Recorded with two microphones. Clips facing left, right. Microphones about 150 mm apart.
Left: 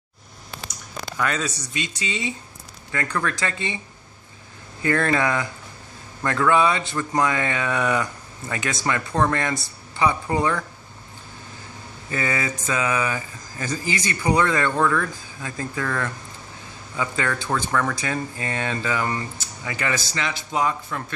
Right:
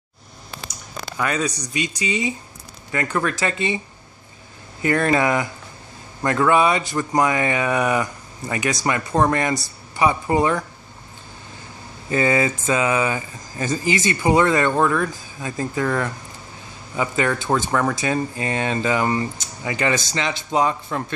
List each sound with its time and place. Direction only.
1.1 s speech: 15° right (ahead or behind)
4.8 s speech: 15° right (ahead or behind)
12.1 s speech: 25° right (ahead or behind)